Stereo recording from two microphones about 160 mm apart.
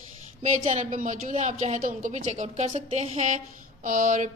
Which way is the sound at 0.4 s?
50° right (ahead or behind).